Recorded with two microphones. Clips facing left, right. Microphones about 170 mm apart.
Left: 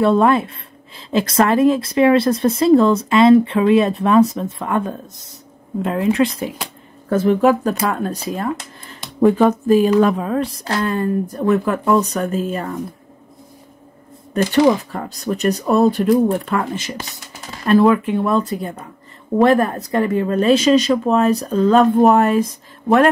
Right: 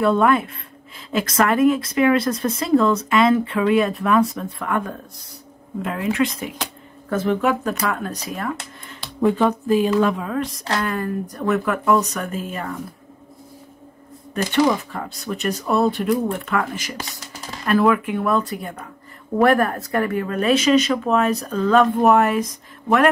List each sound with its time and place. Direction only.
0.0 s a woman's voice: 30° left (ahead or behind)
9.2 s a woman's voice: 45° left (ahead or behind)
14.3 s a woman's voice: 35° left (ahead or behind)